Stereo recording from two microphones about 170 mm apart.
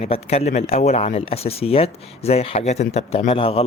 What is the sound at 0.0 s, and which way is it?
Speech, 40° left (ahead or behind).